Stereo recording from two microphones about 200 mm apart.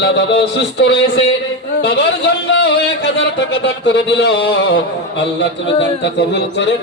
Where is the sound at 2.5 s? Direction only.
60° left (ahead or behind).